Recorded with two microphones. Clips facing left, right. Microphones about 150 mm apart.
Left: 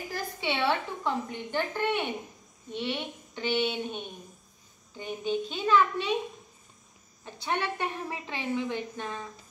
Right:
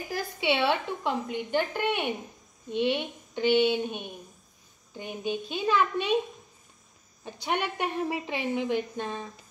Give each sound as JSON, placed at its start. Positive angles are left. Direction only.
{"t": 0.1, "sound": "a woman's voice", "side_deg": -15}
{"t": 7.4, "sound": "a woman's voice", "side_deg": -15}